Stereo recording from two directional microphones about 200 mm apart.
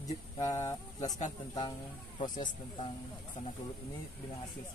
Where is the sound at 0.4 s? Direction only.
15° left (ahead or behind).